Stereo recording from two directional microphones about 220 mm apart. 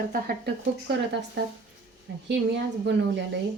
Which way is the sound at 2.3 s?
50° right (ahead or behind).